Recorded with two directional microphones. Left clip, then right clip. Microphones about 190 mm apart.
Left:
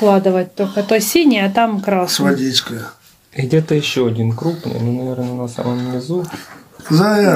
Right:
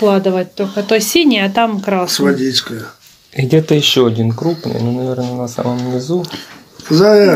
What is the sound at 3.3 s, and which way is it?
Speech, 25° right (ahead or behind).